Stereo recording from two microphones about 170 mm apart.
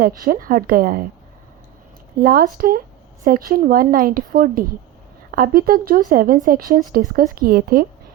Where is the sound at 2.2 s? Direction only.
60° right (ahead or behind).